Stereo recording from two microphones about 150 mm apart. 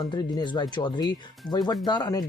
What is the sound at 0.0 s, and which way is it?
Speech, 25° left (ahead or behind).